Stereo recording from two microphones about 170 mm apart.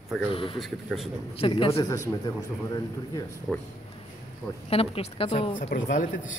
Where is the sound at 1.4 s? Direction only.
30° left (ahead or behind).